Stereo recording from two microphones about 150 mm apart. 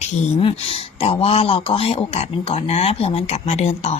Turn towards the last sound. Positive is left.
turn(degrees=45)  # may be behind; listen again after turning